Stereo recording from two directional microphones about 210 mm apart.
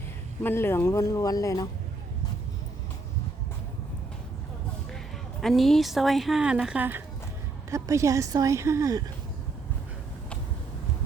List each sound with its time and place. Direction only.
0.4 s speech: 10° left (ahead or behind)
5.4 s a woman's voice: centre (ahead or behind); by 9.0 s 15° right (ahead or behind)